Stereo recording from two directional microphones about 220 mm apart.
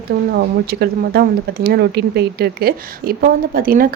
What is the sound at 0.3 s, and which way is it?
Speech, 45° right (ahead or behind).